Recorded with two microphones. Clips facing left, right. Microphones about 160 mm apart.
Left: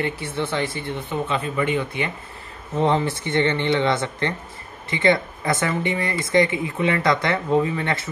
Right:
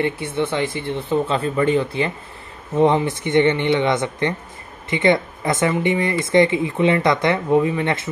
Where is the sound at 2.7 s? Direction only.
15° right (ahead or behind).